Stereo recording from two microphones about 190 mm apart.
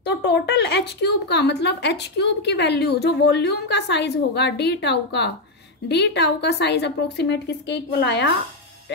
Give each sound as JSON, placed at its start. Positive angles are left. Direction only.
{"t": 0.0, "sound": "speech", "side_deg": 65}